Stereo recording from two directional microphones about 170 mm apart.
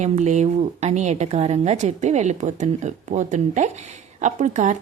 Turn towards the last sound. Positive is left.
turn(degrees=-45)  # may be behind; listen again after turning